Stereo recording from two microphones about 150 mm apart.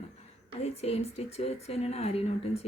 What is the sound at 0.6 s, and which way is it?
Speech, 45° left (ahead or behind).